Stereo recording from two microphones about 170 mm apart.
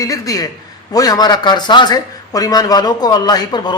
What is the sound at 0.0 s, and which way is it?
A man's voice, 20° left (ahead or behind).